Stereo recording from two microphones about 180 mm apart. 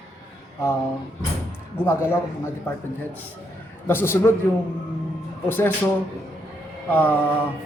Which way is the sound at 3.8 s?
10° left (ahead or behind).